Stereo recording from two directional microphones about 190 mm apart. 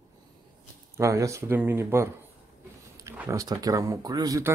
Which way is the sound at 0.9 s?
15° right (ahead or behind).